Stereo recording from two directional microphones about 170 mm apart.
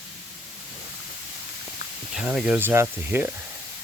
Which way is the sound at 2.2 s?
5° right (ahead or behind).